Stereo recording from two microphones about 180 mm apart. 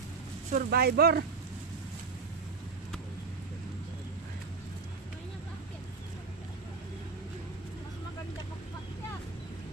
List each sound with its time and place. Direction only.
0.5 s speech: 55° right (ahead or behind)